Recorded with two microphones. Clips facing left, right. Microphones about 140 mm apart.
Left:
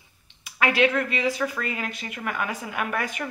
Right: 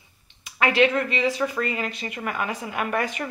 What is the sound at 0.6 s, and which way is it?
A woman's voice, 5° left (ahead or behind).